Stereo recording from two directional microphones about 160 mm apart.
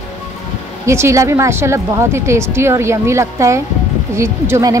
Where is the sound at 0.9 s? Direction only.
15° right (ahead or behind).